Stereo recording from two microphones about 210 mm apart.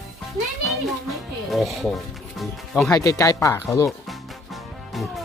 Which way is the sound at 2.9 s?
15° left (ahead or behind).